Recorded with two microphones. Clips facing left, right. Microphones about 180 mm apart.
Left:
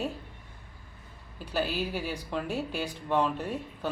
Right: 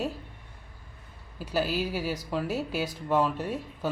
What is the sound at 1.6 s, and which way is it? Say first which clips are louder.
Speech: right 2 dB; 40° right (ahead or behind).